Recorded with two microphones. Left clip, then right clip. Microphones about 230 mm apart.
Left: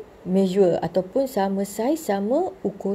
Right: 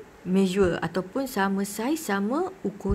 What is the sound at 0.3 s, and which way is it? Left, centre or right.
Speech, centre.